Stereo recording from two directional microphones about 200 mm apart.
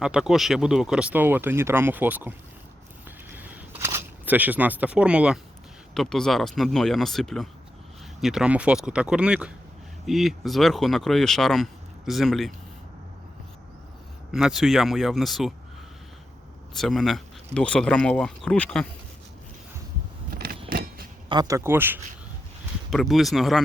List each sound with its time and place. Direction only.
0.0 s speech: 5° right (ahead or behind)
3.2 s a sound: 10° right (ahead or behind)
5.9 s speech: centre (ahead or behind)
14.3 s speech: centre (ahead or behind)
16.7 s speech: centre (ahead or behind)
20.3 s power windows: 50° right (ahead or behind)
20.7 s a sound: 50° right (ahead or behind)
21.2 s speech: 20° right (ahead or behind)
22.9 s speech: centre (ahead or behind)